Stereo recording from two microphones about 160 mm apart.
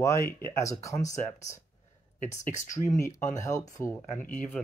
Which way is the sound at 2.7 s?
20° left (ahead or behind).